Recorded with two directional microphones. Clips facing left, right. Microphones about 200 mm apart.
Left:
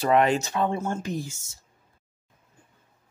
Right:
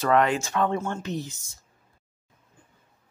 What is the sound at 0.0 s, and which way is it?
Speech, 15° left (ahead or behind).